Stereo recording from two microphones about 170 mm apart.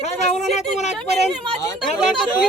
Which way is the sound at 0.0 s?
40° left (ahead or behind).